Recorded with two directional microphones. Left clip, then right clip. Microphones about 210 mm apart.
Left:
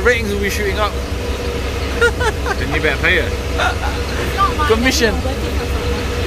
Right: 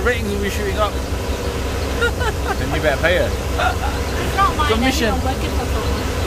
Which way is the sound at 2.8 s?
40° right (ahead or behind).